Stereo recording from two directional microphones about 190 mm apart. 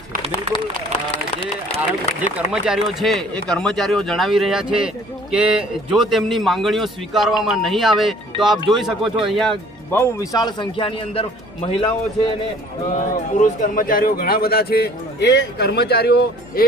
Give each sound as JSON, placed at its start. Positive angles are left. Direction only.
{"t": 2.5, "sound": "speech", "side_deg": -5}
{"t": 9.9, "sound": "a man's voice", "side_deg": 20}
{"t": 12.8, "sound": "a man's voice", "side_deg": 45}